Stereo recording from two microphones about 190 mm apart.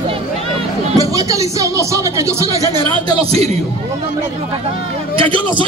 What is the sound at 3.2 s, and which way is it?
Speech, 30° right (ahead or behind).